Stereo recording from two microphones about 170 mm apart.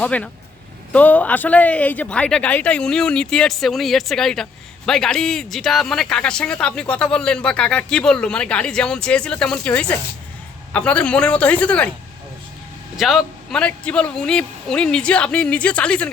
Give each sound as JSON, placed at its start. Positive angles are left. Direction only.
{"t": 0.0, "sound": "speech", "side_deg": 5}
{"t": 13.0, "sound": "speech", "side_deg": 0}